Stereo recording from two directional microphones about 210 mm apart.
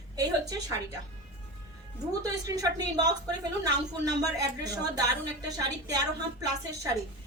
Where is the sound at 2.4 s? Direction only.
15° right (ahead or behind).